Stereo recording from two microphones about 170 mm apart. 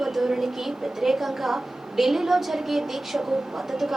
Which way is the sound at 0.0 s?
Centre (ahead or behind).